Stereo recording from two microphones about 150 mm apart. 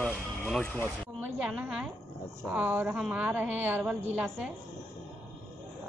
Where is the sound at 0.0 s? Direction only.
5° left (ahead or behind).